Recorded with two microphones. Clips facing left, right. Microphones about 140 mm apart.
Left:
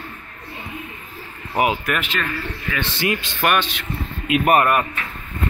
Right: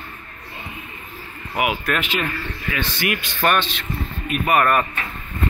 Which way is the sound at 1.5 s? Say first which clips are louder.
Left 3 dB; 30° left (ahead or behind).